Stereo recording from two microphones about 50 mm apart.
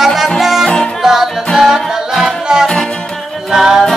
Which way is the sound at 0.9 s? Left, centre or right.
Centre.